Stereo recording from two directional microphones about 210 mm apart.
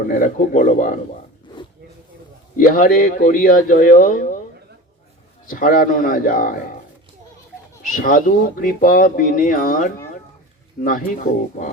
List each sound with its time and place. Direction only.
0.2 s speech: 40° left (ahead or behind)
2.6 s speech: 40° left (ahead or behind)
5.5 s a man's voice: 40° left (ahead or behind)
7.9 s a man's voice: 40° left (ahead or behind)